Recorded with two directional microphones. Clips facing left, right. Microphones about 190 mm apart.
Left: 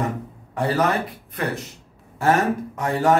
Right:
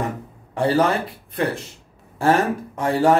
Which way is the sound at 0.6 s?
30° right (ahead or behind).